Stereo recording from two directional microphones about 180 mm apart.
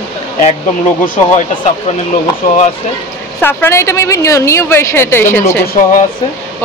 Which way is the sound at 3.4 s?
15° left (ahead or behind).